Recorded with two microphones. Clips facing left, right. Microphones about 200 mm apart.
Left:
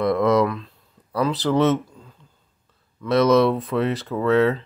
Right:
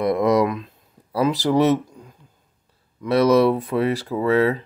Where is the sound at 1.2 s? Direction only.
15° right (ahead or behind).